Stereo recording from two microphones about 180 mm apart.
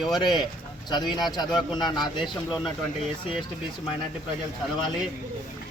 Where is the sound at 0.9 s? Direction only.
25° left (ahead or behind).